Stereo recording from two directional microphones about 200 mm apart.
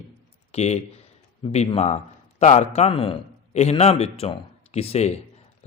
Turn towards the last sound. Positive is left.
turn(degrees=30)  # may be behind; listen again after turning